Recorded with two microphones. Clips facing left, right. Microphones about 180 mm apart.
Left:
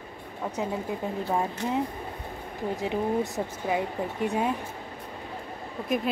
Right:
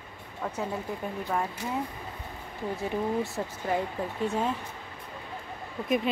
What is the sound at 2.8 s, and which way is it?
A woman's voice, 15° left (ahead or behind).